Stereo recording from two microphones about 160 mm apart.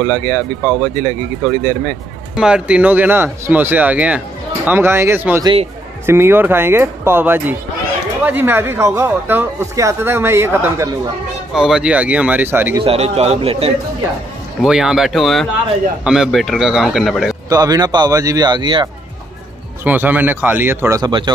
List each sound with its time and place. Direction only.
0.0 s speech: 20° left (ahead or behind)
2.3 s speech: 5° right (ahead or behind)
5.4 s a man's voice: 30° right (ahead or behind)
6.0 s speech: 15° right (ahead or behind)
11.5 s speech: 5° right (ahead or behind)
12.8 s a man's voice: 40° right (ahead or behind)
14.6 s a man's voice: 5° right (ahead or behind)
17.5 s speech: 20° right (ahead or behind)
19.8 s speech: 10° right (ahead or behind)